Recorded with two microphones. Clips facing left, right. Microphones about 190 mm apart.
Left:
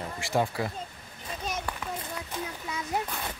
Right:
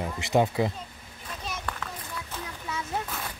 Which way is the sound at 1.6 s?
15° left (ahead or behind).